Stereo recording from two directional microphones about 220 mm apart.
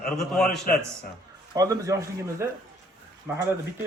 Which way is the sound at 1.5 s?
15° right (ahead or behind).